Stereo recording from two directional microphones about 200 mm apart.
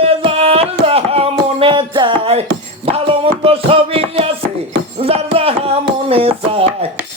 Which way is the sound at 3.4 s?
30° right (ahead or behind).